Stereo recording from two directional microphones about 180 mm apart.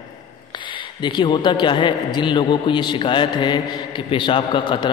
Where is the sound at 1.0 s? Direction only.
25° left (ahead or behind).